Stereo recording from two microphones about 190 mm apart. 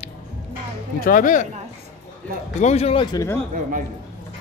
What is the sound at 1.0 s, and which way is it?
Speech, 45° left (ahead or behind).